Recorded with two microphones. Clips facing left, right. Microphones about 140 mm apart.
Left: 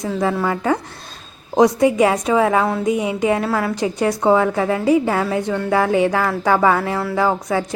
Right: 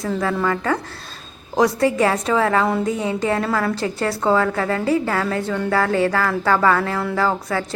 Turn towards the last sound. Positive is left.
turn(degrees=15)  # may be behind; listen again after turning